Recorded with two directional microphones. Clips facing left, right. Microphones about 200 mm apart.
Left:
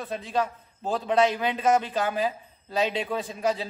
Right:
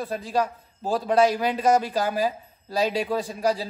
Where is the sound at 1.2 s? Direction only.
40° right (ahead or behind).